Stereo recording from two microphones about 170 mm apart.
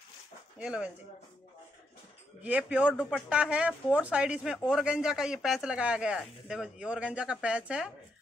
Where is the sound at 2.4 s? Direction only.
10° right (ahead or behind).